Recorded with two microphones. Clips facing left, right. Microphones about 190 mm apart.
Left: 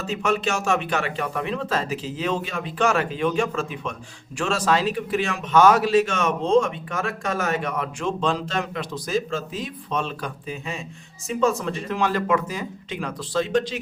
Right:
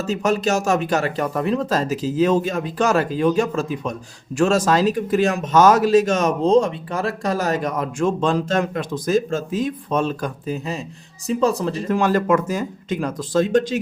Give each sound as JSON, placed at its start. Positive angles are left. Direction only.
{"t": 0.0, "sound": "speech", "side_deg": -40}